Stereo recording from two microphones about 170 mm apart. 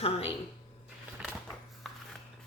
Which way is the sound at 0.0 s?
35° left (ahead or behind).